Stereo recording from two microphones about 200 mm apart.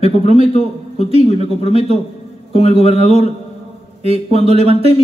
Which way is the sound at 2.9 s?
30° right (ahead or behind).